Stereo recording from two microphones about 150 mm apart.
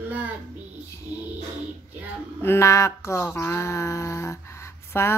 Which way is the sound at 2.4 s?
15° left (ahead or behind).